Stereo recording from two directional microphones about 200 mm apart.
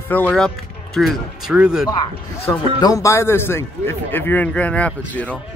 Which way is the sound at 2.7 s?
20° left (ahead or behind).